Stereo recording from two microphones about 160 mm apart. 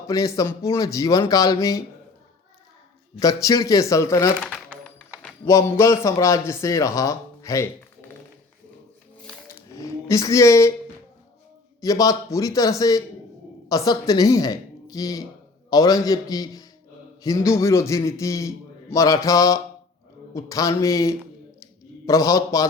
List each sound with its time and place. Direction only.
0.1 s a man's voice: 20° left (ahead or behind)
3.2 s a man's voice: 20° left (ahead or behind)
4.4 s typing: centre (ahead or behind)
5.5 s a man's voice: 20° left (ahead or behind)
9.7 s speech: 20° left (ahead or behind)
11.8 s a man's voice: 20° left (ahead or behind)